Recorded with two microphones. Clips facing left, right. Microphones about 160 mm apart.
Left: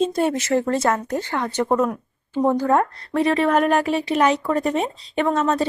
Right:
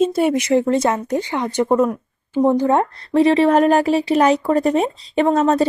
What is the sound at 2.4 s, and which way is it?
A woman's voice, 20° right (ahead or behind).